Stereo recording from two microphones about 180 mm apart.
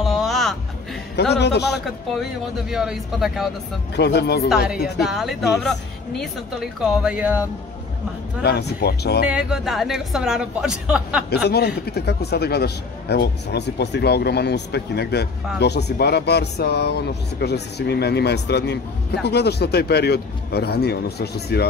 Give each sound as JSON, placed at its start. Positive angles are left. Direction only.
{"t": 0.0, "sound": "music", "side_deg": 0}
{"t": 1.3, "sound": "a man's voice", "side_deg": 70}
{"t": 1.7, "sound": "a woman's voice", "side_deg": 0}
{"t": 3.9, "sound": "a man's voice", "side_deg": 65}
{"t": 5.0, "sound": "a woman's voice", "side_deg": 0}
{"t": 8.5, "sound": "a man's voice", "side_deg": 65}
{"t": 9.3, "sound": "a woman's voice", "side_deg": -5}
{"t": 11.4, "sound": "a man's voice", "side_deg": 60}